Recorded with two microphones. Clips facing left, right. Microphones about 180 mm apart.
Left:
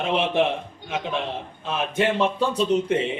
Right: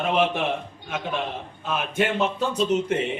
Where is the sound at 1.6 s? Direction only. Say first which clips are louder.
Left 1 dB; 30° left (ahead or behind).